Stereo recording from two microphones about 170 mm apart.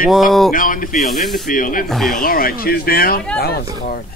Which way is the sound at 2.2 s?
60° left (ahead or behind).